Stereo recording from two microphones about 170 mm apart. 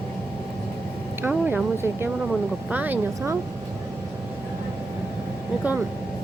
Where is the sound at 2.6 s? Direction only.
10° right (ahead or behind).